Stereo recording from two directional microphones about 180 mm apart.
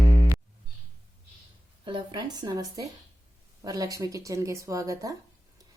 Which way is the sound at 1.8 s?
25° right (ahead or behind).